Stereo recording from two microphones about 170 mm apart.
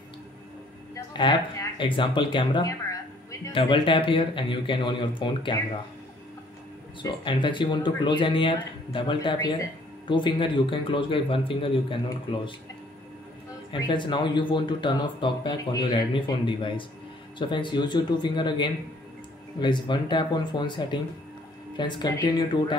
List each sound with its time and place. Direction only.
0.9 s speech: 25° left (ahead or behind)
7.0 s speech: 30° left (ahead or behind)
13.7 s speech: 25° left (ahead or behind)